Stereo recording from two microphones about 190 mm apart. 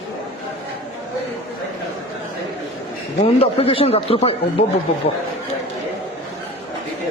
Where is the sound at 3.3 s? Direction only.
30° left (ahead or behind).